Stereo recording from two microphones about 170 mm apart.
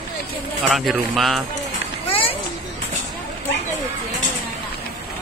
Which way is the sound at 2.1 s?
35° left (ahead or behind).